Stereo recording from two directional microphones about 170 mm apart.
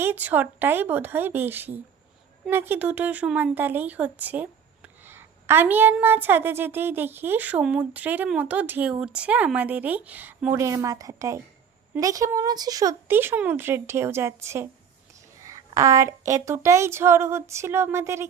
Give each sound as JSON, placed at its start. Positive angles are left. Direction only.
{"t": 0.0, "sound": "speech", "side_deg": -10}